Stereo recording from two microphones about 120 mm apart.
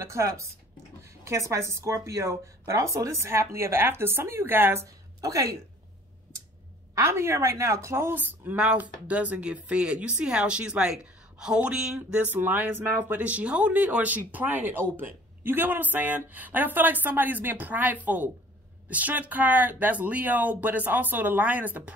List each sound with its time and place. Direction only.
0.0 s speech: 25° right (ahead or behind)
5.2 s speech: 30° right (ahead or behind)
7.0 s speech: 20° right (ahead or behind)